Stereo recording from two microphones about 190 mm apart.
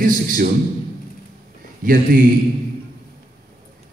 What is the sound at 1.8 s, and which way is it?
Speech, 45° right (ahead or behind).